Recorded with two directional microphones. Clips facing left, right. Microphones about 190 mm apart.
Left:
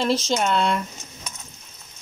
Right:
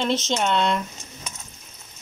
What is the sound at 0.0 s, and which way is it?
Speech, centre (ahead or behind).